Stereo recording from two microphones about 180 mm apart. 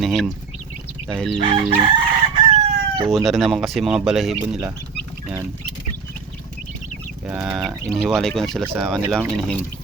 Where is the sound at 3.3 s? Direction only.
Centre (ahead or behind).